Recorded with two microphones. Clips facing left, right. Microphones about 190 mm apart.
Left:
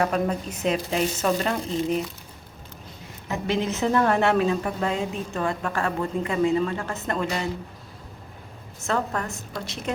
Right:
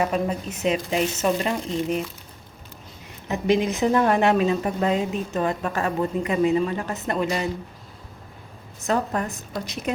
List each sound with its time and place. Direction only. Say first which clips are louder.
0.0 s a woman's voice: even; 5° right (ahead or behind)
3.2 s a woman's voice: right 4 dB; 20° right (ahead or behind)
8.8 s a woman's voice: right 3 dB; 20° right (ahead or behind)